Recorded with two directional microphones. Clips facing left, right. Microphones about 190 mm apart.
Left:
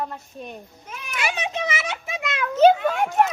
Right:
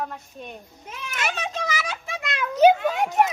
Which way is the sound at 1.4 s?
20° left (ahead or behind).